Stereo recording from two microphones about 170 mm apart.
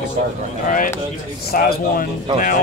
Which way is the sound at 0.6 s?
50° left (ahead or behind).